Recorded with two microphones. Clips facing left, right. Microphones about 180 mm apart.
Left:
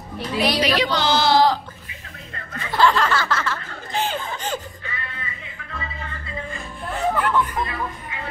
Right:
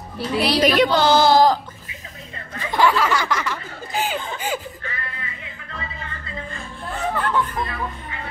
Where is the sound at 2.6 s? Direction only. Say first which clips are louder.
Even; 10° right (ahead or behind).